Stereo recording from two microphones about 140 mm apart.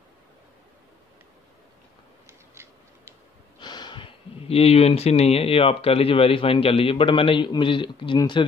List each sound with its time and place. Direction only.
2.5 s tick-tock: 15° right (ahead or behind)
3.5 s speech: 30° left (ahead or behind)